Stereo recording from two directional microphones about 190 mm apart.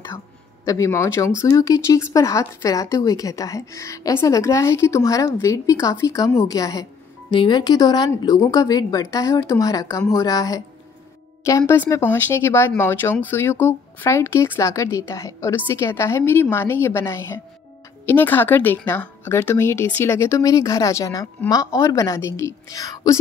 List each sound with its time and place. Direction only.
0.7 s a woman's voice: 15° left (ahead or behind)